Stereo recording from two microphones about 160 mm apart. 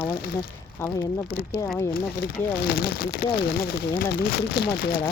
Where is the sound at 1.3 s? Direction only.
75° left (ahead or behind).